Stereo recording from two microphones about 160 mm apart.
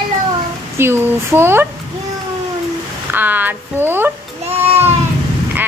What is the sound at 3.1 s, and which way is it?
Speech, 10° right (ahead or behind).